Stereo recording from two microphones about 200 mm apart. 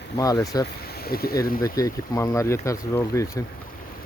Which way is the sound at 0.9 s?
50° left (ahead or behind).